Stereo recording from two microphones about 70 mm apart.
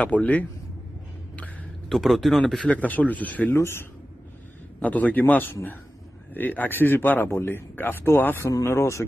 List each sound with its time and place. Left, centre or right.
0.0 s a man's voice: left
1.9 s speech: centre
2.7 s a man's voice: left
3.5 s speech: left
4.8 s a man's voice: left
8.6 s speech: left